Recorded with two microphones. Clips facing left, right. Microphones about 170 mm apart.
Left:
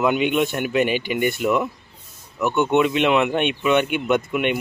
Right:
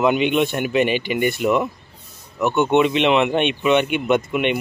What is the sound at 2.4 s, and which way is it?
Speech, 15° right (ahead or behind).